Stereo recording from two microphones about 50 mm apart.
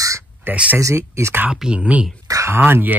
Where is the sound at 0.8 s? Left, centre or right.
Right.